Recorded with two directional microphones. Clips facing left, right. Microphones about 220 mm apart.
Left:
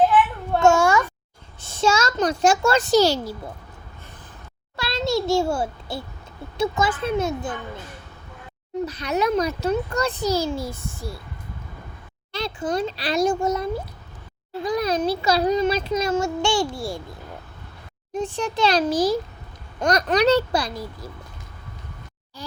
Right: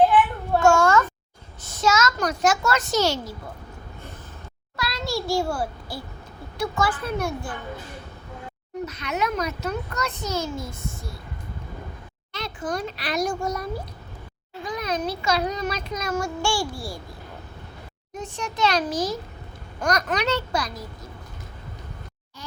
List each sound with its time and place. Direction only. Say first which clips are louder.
0.6 s a sound: left 1 dB; 15° left (ahead or behind)
1.6 s a child's voice: left 1 dB; 30° left (ahead or behind)
4.8 s a sound: left 5 dB; 25° left (ahead or behind)
6.6 s a child's voice: left 3 dB; 20° left (ahead or behind)
8.9 s a child's voice: left 5 dB; 35° left (ahead or behind)
12.3 s a child's voice: left 4 dB; 30° left (ahead or behind)
14.6 s a child's voice: left 5 dB; 35° left (ahead or behind)
18.1 s a child's voice: left 7 dB; 30° left (ahead or behind)